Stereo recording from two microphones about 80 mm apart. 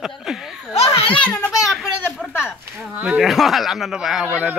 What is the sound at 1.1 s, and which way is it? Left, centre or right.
Speech, centre.